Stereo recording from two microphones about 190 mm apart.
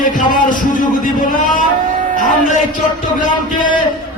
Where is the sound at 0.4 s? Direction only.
45° left (ahead or behind).